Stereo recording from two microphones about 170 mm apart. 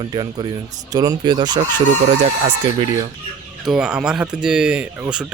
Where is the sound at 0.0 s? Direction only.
25° right (ahead or behind).